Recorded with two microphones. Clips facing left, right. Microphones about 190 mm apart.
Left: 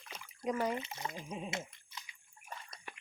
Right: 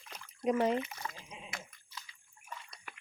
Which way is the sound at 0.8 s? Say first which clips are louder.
Left 2 dB; 25° left (ahead or behind).